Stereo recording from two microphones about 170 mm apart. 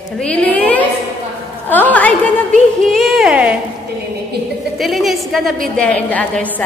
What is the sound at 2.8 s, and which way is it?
Child singing, centre (ahead or behind).